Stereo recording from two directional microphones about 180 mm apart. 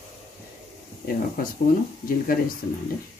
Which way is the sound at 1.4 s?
55° left (ahead or behind).